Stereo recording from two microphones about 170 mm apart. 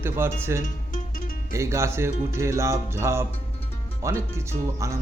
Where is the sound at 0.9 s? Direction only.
55° left (ahead or behind).